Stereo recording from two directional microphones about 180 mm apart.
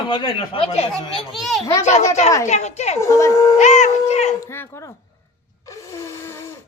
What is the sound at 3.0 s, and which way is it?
Speech, 15° left (ahead or behind).